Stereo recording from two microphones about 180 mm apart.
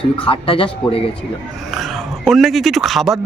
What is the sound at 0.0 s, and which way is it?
Speech, 30° left (ahead or behind).